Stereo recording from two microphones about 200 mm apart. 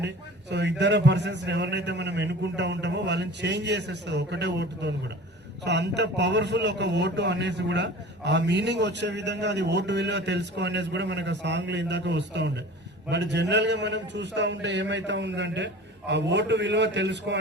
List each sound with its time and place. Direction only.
0.5 s a man's voice: 60° right (ahead or behind)